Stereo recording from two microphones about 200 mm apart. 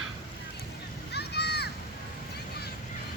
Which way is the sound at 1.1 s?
55° left (ahead or behind).